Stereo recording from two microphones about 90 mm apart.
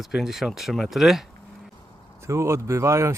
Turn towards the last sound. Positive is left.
turn(degrees=-35)  # may be behind; listen again after turning